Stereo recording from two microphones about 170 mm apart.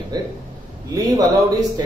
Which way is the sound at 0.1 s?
25° right (ahead or behind).